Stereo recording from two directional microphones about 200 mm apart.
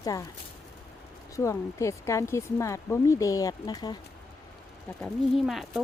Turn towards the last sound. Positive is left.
turn(degrees=0)  # may be behind; listen again after turning